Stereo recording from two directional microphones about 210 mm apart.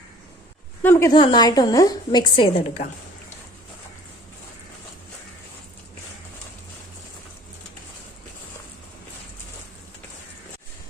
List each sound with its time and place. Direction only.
0.8 s a woman's voice: 10° left (ahead or behind); by 2.8 s 25° left (ahead or behind)